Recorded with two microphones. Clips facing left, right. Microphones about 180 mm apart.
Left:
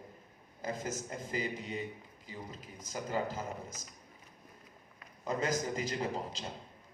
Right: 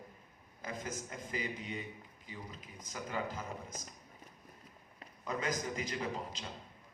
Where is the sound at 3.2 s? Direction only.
35° left (ahead or behind).